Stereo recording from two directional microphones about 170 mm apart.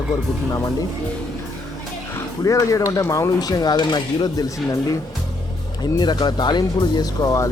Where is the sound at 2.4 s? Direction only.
20° left (ahead or behind).